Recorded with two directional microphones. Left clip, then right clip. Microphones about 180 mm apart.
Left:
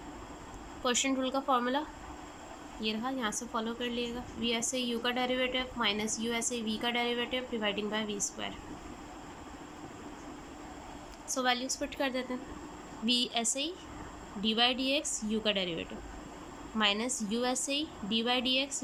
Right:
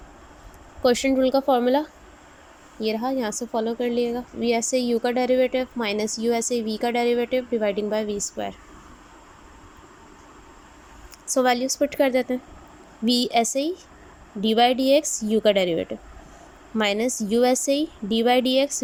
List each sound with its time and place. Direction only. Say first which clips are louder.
0.8 s a woman's voice: right 11 dB; 30° right (ahead or behind)
2.8 s a woman's voice: right 10 dB; 30° right (ahead or behind)
11.3 s a woman's voice: right 10 dB; 40° right (ahead or behind)